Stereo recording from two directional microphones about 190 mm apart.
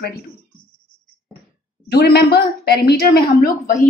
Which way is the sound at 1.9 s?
60° left (ahead or behind).